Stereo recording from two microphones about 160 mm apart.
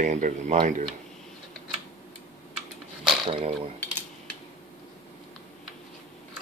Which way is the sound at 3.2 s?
35° right (ahead or behind).